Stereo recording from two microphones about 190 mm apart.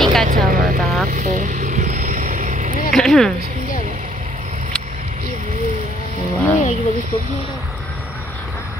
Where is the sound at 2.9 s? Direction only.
Centre (ahead or behind).